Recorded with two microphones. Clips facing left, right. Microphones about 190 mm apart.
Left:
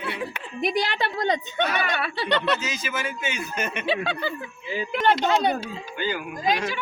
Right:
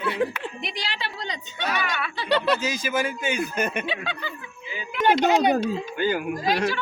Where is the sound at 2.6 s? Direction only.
35° right (ahead or behind).